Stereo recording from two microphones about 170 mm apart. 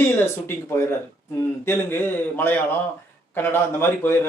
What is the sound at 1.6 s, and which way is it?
Speech, 15° left (ahead or behind).